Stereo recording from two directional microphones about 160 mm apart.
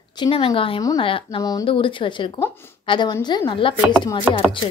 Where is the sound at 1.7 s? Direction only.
30° left (ahead or behind).